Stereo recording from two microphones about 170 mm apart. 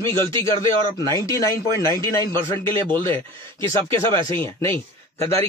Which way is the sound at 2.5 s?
30° right (ahead or behind).